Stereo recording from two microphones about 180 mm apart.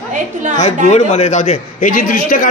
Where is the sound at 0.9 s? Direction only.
40° left (ahead or behind).